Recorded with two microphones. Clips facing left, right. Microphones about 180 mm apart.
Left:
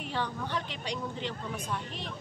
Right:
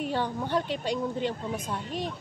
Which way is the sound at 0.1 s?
45° right (ahead or behind).